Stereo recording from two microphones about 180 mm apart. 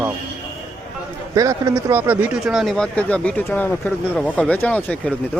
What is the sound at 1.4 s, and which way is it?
Speech, 20° right (ahead or behind).